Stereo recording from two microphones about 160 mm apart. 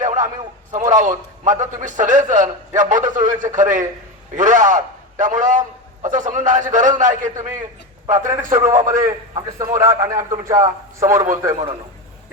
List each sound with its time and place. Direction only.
0.0 s a sound: 50° right (ahead or behind)
0.7 s a man's voice: 50° right (ahead or behind)
8.0 s a man's voice: 20° right (ahead or behind)
8.4 s a man's voice: 55° right (ahead or behind)
9.6 s a man's voice: 20° right (ahead or behind)